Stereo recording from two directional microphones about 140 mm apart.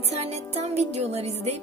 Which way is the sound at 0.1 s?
50° right (ahead or behind).